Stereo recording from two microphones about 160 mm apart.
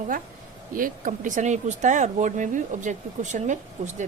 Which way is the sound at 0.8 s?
55° right (ahead or behind).